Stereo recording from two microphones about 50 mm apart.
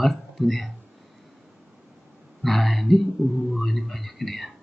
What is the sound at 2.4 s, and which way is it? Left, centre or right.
Speech, centre.